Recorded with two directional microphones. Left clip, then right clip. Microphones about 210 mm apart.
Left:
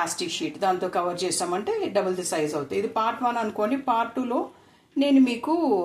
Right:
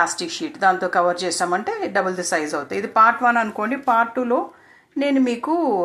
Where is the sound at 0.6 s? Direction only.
20° right (ahead or behind).